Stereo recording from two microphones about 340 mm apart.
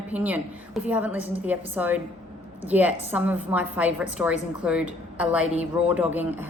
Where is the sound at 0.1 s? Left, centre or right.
Centre.